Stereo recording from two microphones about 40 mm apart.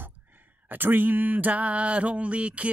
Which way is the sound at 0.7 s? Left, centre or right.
Right.